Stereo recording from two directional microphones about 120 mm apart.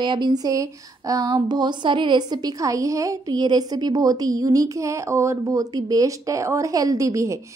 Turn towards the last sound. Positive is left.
turn(degrees=-25)  # may be behind; listen again after turning